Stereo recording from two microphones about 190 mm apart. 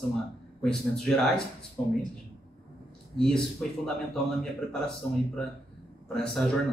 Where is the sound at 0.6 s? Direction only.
5° left (ahead or behind).